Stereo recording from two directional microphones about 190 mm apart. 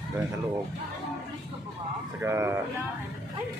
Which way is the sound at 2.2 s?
15° right (ahead or behind).